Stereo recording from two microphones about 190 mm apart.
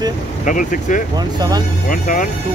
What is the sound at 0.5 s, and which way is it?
Speech, 45° left (ahead or behind).